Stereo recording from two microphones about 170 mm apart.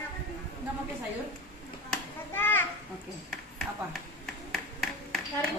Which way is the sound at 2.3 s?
10° left (ahead or behind).